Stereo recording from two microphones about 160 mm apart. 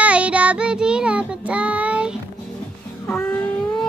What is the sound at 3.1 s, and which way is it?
Music, 10° left (ahead or behind).